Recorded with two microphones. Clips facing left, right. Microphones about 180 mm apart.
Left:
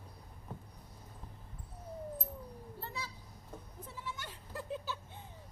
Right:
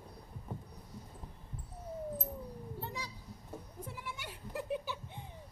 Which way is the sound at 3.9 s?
15° right (ahead or behind).